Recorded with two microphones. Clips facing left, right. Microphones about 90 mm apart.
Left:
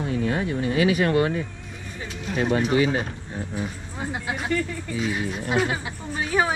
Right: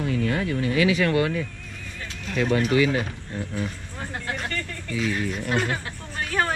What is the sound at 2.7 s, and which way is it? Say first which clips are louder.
Speech: even; 30° left (ahead or behind).